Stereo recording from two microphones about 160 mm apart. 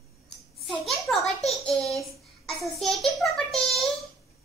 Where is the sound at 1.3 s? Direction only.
40° left (ahead or behind).